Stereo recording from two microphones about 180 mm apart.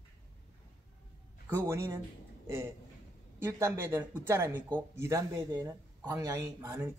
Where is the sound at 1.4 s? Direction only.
15° right (ahead or behind).